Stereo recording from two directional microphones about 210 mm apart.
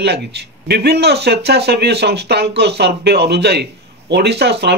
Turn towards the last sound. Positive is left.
turn(degrees=-50)  # may be behind; listen again after turning